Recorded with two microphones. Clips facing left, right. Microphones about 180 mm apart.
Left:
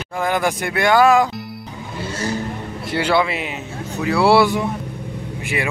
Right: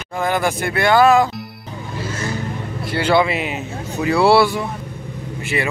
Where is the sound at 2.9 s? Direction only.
10° left (ahead or behind).